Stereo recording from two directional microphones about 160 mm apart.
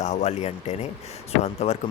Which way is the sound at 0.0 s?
50° left (ahead or behind).